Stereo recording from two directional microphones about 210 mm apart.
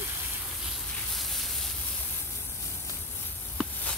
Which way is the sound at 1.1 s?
Centre (ahead or behind).